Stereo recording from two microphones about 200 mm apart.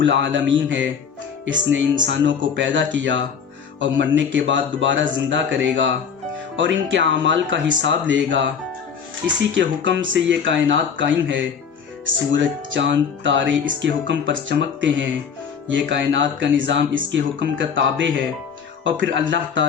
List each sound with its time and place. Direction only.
0.0 s speech: 65° right (ahead or behind)
9.6 s speech: 65° right (ahead or behind)